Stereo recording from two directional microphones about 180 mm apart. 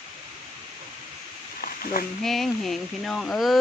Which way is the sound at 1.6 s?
50° left (ahead or behind).